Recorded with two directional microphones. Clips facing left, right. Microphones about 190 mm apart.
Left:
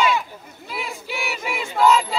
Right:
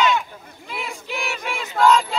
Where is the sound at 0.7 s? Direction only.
5° left (ahead or behind).